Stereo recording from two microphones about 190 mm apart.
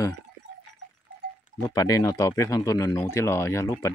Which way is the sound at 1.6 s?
20° left (ahead or behind).